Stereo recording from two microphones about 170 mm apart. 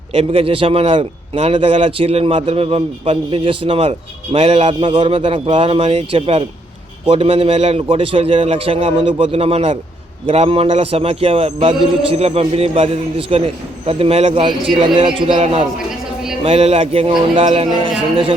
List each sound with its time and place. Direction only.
0.1 s a man's voice: 35° right (ahead or behind)